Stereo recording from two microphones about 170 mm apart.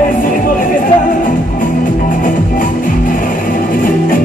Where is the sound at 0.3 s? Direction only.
55° left (ahead or behind).